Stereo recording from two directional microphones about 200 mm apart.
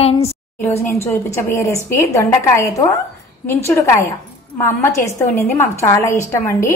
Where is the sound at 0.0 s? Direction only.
30° left (ahead or behind).